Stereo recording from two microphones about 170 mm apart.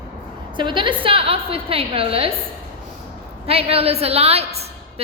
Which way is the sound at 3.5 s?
35° right (ahead or behind).